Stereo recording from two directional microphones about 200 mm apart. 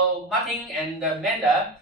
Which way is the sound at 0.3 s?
Centre (ahead or behind).